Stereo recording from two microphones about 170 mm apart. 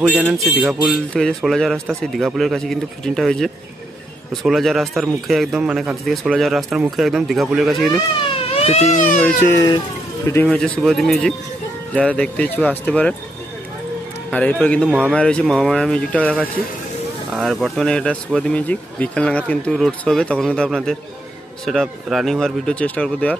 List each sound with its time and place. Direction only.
0.1 s speech: 5° right (ahead or behind)
8.5 s speech: 35° left (ahead or behind)
9.2 s speech: 10° left (ahead or behind)
14.3 s speech: 10° left (ahead or behind)
14.9 s speech: 10° right (ahead or behind)
15.1 s speech: 5° left (ahead or behind)